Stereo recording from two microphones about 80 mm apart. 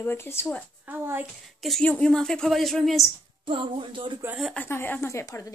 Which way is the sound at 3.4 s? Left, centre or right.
Right.